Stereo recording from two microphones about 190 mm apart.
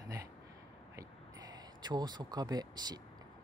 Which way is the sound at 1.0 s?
20° right (ahead or behind).